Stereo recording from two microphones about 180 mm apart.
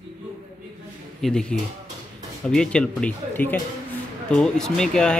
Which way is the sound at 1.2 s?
5° left (ahead or behind).